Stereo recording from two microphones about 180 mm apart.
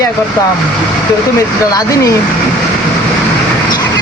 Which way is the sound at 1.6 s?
20° left (ahead or behind).